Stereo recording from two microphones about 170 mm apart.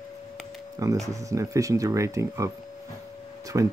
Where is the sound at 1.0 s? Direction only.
20° right (ahead or behind).